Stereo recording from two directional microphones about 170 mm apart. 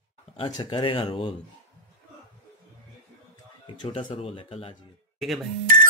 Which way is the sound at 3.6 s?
30° left (ahead or behind).